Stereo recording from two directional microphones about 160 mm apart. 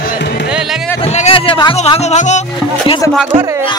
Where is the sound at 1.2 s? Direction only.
35° left (ahead or behind).